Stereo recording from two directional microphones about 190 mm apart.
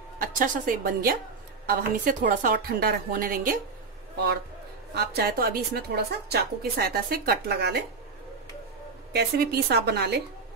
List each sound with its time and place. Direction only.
0.2 s speech: 45° right (ahead or behind)
4.9 s a woman's voice: 55° right (ahead or behind)
9.1 s a woman's voice: 55° right (ahead or behind)